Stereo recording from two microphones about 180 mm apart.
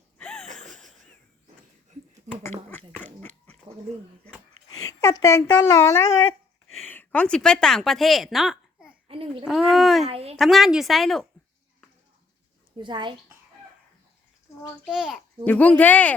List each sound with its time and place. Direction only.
0.2 s a sound: 5° left (ahead or behind)
3.0 s dog: 10° left (ahead or behind)
4.8 s a woman's voice: 20° left (ahead or behind); by 8.9 s centre (ahead or behind)
9.0 s babbling: 30° right (ahead or behind)
9.4 s speech: centre (ahead or behind)
10.1 s a sound: 35° right (ahead or behind)
10.3 s speech: centre (ahead or behind)
12.7 s a child's voice: 25° right (ahead or behind)
14.9 s speech: centre (ahead or behind)
15.4 s speech: 10° left (ahead or behind)